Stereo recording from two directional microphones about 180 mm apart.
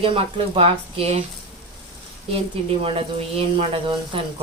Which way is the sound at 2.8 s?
30° right (ahead or behind).